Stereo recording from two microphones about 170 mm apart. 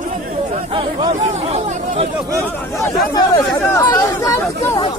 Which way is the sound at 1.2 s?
40° right (ahead or behind).